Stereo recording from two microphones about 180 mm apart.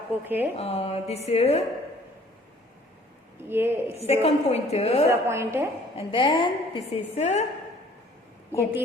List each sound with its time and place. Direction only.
0.3 s a woman's voice: 10° right (ahead or behind)
0.5 s a woman's voice: 35° left (ahead or behind)
3.5 s a woman's voice: 15° right (ahead or behind)
3.8 s a woman's voice: 35° left (ahead or behind)
5.0 s a woman's voice: 15° right (ahead or behind)
6.0 s a woman's voice: 30° left (ahead or behind)